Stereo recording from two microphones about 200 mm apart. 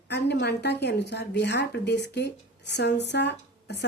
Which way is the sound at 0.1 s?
55° left (ahead or behind).